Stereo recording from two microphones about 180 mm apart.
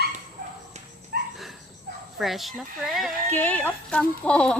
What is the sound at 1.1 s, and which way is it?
Dog, 60° right (ahead or behind).